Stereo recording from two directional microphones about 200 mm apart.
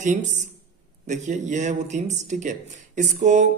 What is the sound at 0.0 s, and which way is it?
Speech, 35° right (ahead or behind).